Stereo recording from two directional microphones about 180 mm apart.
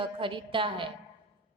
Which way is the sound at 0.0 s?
30° right (ahead or behind).